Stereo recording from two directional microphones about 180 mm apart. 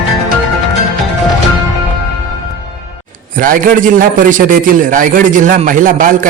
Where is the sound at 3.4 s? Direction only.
50° right (ahead or behind).